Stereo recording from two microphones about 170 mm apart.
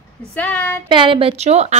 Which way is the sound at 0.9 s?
30° right (ahead or behind).